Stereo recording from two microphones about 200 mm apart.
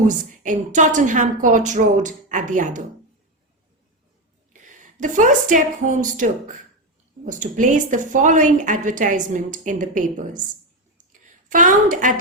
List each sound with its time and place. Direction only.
0.0 s a woman's voice: 40° right (ahead or behind)
4.5 s a woman's voice: 40° right (ahead or behind)
11.1 s a sound: 40° right (ahead or behind)